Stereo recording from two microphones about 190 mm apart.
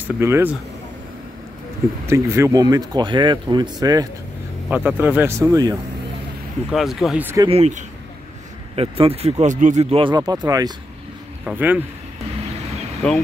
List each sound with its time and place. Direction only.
0.0 s speech: 10° right (ahead or behind)
2.0 s speech: 15° right (ahead or behind)
4.6 s speech: 5° right (ahead or behind)
6.7 s speech: centre (ahead or behind)
7.4 s speech: 35° right (ahead or behind)
11.4 s speech: 10° right (ahead or behind)
13.0 s speech: 5° left (ahead or behind)